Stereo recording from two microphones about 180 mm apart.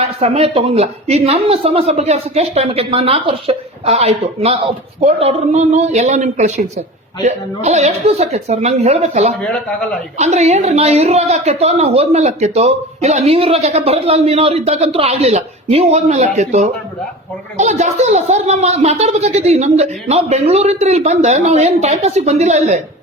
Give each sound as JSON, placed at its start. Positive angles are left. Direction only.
{"t": 0.0, "sound": "a woman's voice", "side_deg": -35}
{"t": 9.4, "sound": "speech", "side_deg": 5}
{"t": 10.2, "sound": "a woman's voice", "side_deg": -40}